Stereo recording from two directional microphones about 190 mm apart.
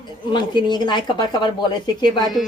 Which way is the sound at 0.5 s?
25° left (ahead or behind).